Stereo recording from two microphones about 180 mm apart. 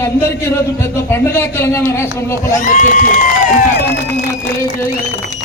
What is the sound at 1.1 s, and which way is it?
Speech, 10° left (ahead or behind).